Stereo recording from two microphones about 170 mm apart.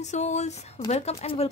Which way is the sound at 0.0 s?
45° left (ahead or behind).